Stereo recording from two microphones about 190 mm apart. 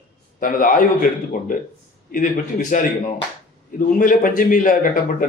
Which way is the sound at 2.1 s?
45° left (ahead or behind).